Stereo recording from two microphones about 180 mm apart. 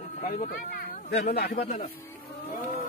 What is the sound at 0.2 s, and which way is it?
Speech, 55° left (ahead or behind).